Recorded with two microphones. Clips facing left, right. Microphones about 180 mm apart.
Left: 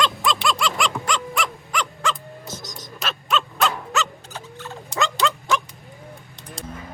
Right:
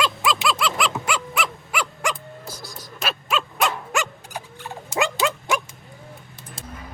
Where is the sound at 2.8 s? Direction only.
5° right (ahead or behind).